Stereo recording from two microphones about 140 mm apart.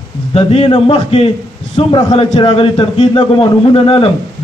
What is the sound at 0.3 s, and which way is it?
A man's voice, 45° left (ahead or behind).